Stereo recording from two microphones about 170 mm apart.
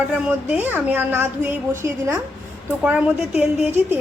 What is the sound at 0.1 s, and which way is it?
A woman's voice, 10° right (ahead or behind).